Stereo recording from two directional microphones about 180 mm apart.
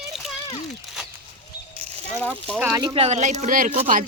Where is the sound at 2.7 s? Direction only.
30° right (ahead or behind); by 3.7 s 45° right (ahead or behind).